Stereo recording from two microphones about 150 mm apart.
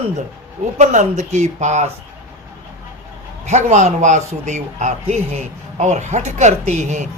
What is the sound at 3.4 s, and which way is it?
Speech, 50° right (ahead or behind).